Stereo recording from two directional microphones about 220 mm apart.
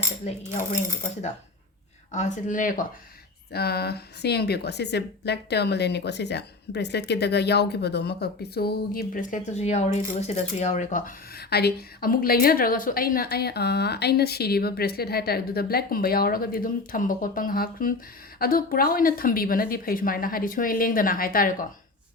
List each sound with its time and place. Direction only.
0.3 s speech: 35° left (ahead or behind)
2.1 s a woman's voice: 35° left (ahead or behind)